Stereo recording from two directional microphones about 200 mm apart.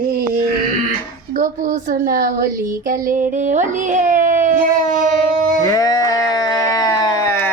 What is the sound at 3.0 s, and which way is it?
A woman's voice, 40° right (ahead or behind).